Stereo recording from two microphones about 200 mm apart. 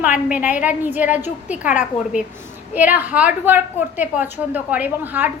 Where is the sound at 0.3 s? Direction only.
5° right (ahead or behind).